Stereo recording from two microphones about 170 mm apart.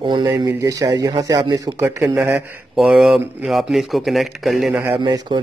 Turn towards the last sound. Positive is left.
turn(degrees=-25)  # may be behind; listen again after turning